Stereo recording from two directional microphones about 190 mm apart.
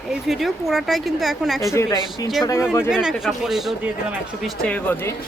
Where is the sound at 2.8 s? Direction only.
5° right (ahead or behind).